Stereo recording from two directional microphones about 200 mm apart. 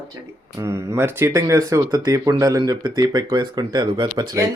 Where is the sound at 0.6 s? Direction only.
15° right (ahead or behind).